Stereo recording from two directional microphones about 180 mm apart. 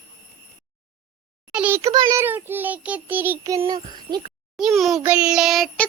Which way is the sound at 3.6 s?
25° right (ahead or behind).